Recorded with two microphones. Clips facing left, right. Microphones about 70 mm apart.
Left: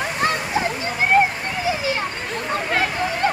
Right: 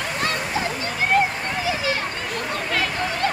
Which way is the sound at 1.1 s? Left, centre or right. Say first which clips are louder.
Left 3 dB; left.